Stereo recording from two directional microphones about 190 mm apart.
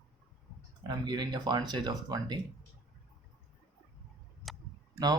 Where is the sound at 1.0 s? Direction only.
25° right (ahead or behind).